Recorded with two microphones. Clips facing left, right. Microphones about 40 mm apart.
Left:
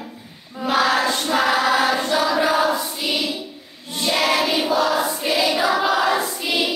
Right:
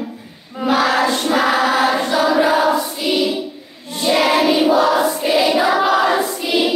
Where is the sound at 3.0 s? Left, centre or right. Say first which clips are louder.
Right 5 dB; centre.